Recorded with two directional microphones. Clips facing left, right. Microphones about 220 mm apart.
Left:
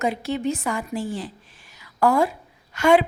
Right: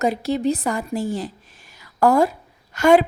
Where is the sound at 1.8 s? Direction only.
40° right (ahead or behind).